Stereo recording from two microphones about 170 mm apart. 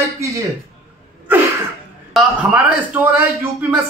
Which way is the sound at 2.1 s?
10° right (ahead or behind).